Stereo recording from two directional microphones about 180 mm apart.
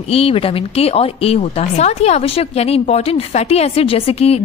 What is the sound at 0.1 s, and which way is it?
A woman's voice, 30° left (ahead or behind).